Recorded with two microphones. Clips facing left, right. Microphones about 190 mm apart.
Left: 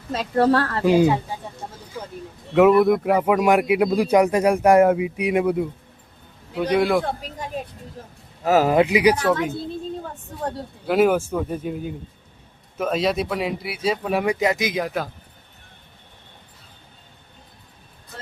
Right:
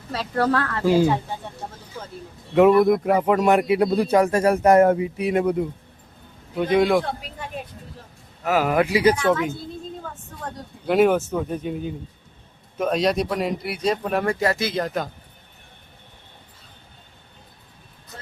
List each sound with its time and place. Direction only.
0.1 s speech: 25° left (ahead or behind)
0.9 s speech: 15° left (ahead or behind)
2.6 s speech: centre (ahead or behind)
7.0 s speech: 40° left (ahead or behind)
8.0 s a sound: 45° left (ahead or behind)
8.4 s speech: 35° left (ahead or behind)
8.7 s speech: 20° left (ahead or behind)
9.1 s speech: 35° left (ahead or behind)
9.6 s a sound: 30° left (ahead or behind)
10.8 s speech: 5° left (ahead or behind)